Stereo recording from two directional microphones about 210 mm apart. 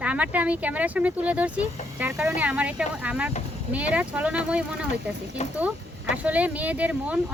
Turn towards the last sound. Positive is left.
turn(degrees=-5)  # may be behind; listen again after turning